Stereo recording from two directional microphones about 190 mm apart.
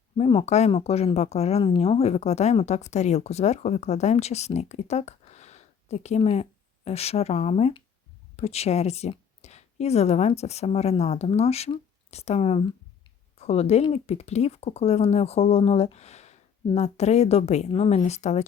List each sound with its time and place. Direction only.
0.2 s speech: 30° left (ahead or behind)